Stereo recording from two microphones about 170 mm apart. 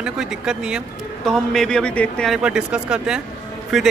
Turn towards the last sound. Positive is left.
turn(degrees=0)  # may be behind; listen again after turning